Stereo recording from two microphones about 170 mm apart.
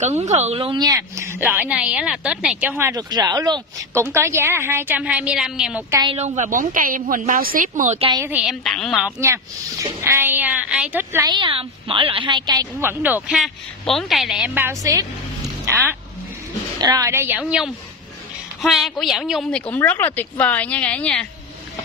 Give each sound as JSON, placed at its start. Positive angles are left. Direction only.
{"t": 0.0, "sound": "speech", "side_deg": -40}
{"t": 2.8, "sound": "speech", "side_deg": -20}
{"t": 5.9, "sound": "a woman's voice", "side_deg": -20}
{"t": 6.1, "sound": "a woman's voice", "side_deg": -45}
{"t": 8.3, "sound": "a woman's voice", "side_deg": -5}
{"t": 9.0, "sound": "speech", "side_deg": -15}
{"t": 11.2, "sound": "a woman's voice", "side_deg": -30}
{"t": 13.0, "sound": "a woman's voice", "side_deg": -5}
{"t": 19.7, "sound": "speech", "side_deg": 10}